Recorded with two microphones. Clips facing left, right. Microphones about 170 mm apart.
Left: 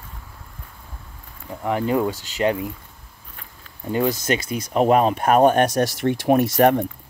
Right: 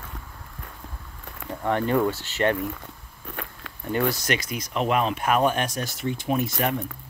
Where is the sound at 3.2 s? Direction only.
75° right (ahead or behind).